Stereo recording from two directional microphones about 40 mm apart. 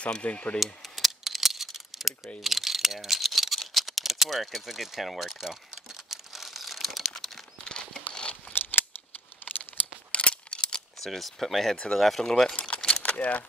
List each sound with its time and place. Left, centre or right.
0.0 s speech: left
0.8 s a sound: centre
6.0 s crumpling: centre
7.6 s a sound: centre
8.1 s crumpling: left
9.4 s tearing: left
10.1 s a sound: left
11.0 s speech: centre
12.3 s speech: centre
12.5 s keys jangling: left